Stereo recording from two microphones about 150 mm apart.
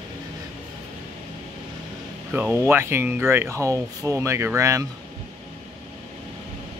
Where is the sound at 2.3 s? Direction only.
10° right (ahead or behind).